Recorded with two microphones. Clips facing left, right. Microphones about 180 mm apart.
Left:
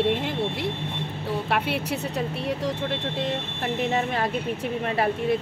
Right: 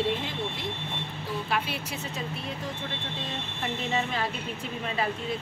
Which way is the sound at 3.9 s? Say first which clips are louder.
Left 5 dB; 55° left (ahead or behind).